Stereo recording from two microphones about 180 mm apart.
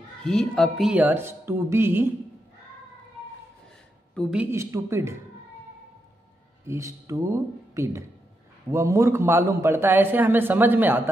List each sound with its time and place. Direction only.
0.2 s a man's voice: centre (ahead or behind)
4.1 s speech: 5° left (ahead or behind)
4.4 s a man's voice: 15° right (ahead or behind)
6.7 s a man's voice: 15° right (ahead or behind)